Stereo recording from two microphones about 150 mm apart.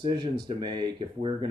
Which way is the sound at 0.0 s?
30° right (ahead or behind).